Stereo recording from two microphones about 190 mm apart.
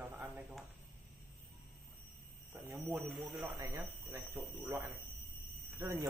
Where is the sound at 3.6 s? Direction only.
20° right (ahead or behind).